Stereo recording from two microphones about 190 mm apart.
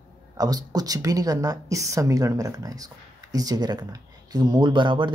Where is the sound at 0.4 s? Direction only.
20° right (ahead or behind).